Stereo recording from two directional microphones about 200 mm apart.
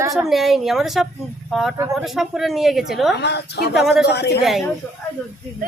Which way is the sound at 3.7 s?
Centre (ahead or behind).